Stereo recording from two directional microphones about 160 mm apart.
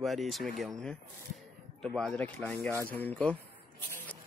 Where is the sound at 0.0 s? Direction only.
Centre (ahead or behind).